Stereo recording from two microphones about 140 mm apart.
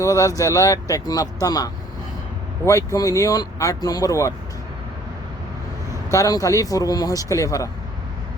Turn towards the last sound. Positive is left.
turn(degrees=20)  # may be behind; listen again after turning